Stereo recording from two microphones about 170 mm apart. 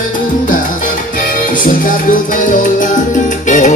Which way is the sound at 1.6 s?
55° left (ahead or behind).